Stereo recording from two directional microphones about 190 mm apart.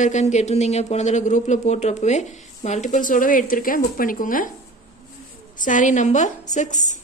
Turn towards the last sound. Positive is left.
turn(degrees=40)  # may be behind; listen again after turning